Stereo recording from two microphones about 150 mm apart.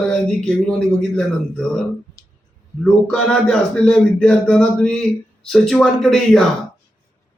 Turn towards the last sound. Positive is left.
turn(degrees=0)  # may be behind; listen again after turning